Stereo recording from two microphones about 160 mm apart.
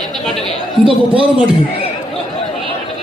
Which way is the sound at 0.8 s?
35° right (ahead or behind).